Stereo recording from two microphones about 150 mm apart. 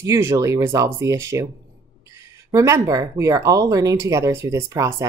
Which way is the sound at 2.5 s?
20° right (ahead or behind).